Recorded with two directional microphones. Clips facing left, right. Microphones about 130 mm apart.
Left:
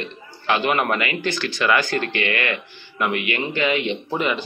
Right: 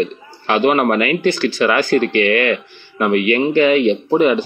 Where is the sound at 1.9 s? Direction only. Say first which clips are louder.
Right 9 dB; 30° left (ahead or behind).